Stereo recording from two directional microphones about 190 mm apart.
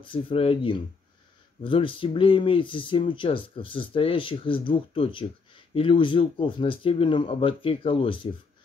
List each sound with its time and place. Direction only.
0.0 s speech: 25° left (ahead or behind)